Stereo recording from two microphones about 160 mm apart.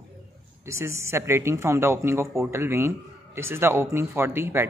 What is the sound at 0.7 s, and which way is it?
Speech, 15° right (ahead or behind).